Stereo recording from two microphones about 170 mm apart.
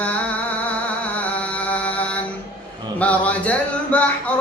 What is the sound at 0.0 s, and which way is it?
Music, 10° left (ahead or behind).